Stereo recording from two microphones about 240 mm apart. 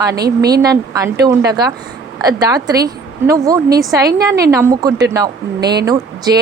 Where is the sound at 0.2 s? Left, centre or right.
Right.